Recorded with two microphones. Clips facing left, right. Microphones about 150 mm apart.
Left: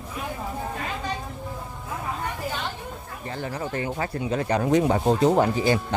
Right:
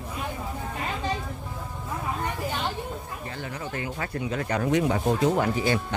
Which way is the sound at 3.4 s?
35° left (ahead or behind).